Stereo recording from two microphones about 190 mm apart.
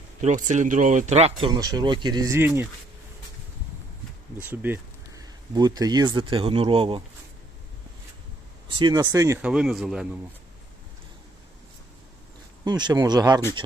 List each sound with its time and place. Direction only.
0.2 s speech: 40° right (ahead or behind)
1.5 s speech: 20° right (ahead or behind)
4.4 s speech: 10° right (ahead or behind); by 7.0 s 30° right (ahead or behind)
8.8 s speech: 20° right (ahead or behind)
9.4 s speech: 5° right (ahead or behind)
12.6 s speech: 20° right (ahead or behind)